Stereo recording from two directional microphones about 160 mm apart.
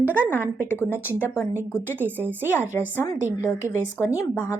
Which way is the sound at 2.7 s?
15° left (ahead or behind).